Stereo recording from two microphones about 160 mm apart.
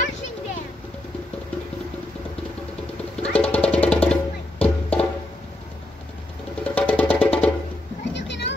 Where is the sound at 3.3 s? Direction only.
10° left (ahead or behind).